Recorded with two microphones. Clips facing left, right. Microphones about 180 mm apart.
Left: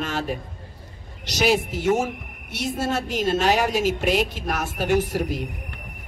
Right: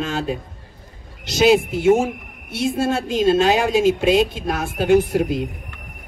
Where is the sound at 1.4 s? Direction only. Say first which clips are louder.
Right 6 dB; 25° right (ahead or behind).